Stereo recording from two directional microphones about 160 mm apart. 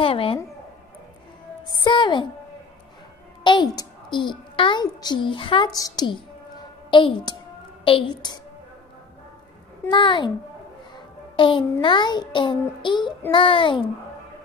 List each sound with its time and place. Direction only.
0.0 s a sound: 35° left (ahead or behind)
1.8 s music: 30° left (ahead or behind)
3.4 s a child's voice: 30° left (ahead or behind)
9.8 s a child's voice: 30° left (ahead or behind)
11.3 s a child's voice: 30° left (ahead or behind)